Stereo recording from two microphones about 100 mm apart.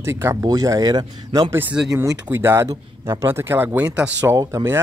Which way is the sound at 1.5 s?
20° right (ahead or behind).